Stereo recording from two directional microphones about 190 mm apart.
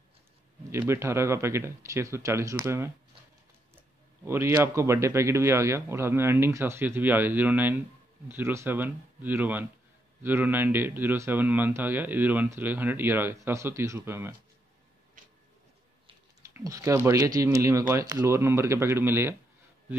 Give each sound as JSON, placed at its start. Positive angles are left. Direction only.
{"t": 0.7, "sound": "speech", "side_deg": -15}
{"t": 4.2, "sound": "speech", "side_deg": -15}
{"t": 15.2, "sound": "tick-tock", "side_deg": -45}
{"t": 16.4, "sound": "speech", "side_deg": -15}